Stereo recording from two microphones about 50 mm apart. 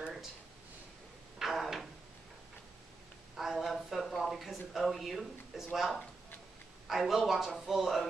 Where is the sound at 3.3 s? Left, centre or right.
Centre.